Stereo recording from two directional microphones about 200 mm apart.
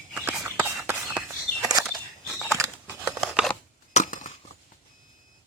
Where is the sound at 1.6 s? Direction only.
15° right (ahead or behind).